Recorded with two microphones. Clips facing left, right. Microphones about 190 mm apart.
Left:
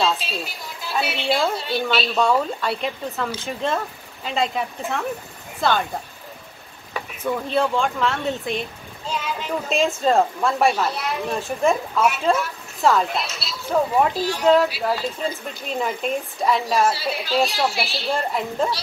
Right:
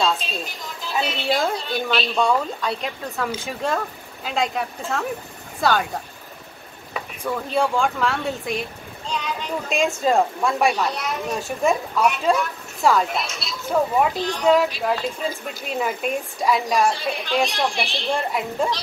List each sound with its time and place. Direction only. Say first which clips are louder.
0.0 s a sound: even; 5° left (ahead or behind)
0.9 s speech: even; 5° left (ahead or behind)
7.4 s speech: right 1 dB; centre (ahead or behind)